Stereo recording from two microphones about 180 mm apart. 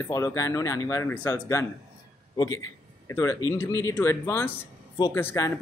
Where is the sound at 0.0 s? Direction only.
15° left (ahead or behind).